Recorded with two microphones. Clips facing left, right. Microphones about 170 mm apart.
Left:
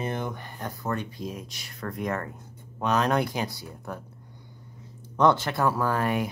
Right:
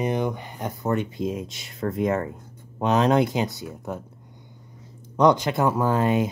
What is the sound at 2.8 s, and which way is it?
Speech, 20° right (ahead or behind).